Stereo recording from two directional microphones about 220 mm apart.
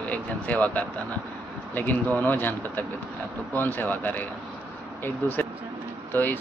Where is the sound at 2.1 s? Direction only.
10° left (ahead or behind).